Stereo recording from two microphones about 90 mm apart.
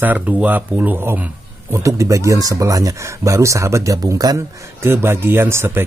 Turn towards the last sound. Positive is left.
turn(degrees=-25)  # may be behind; listen again after turning